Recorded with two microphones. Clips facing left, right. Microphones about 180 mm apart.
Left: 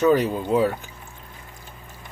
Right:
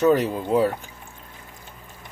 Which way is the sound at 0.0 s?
Centre (ahead or behind).